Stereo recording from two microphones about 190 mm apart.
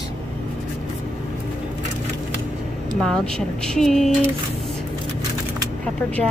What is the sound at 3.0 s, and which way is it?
Speech, 5° left (ahead or behind).